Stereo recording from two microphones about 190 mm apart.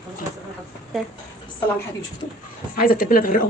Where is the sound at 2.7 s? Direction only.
50° left (ahead or behind).